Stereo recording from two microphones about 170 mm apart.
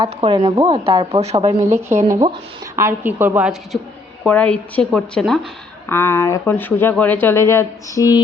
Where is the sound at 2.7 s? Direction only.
15° right (ahead or behind).